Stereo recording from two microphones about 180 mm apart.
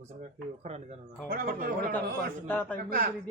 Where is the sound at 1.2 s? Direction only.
50° right (ahead or behind).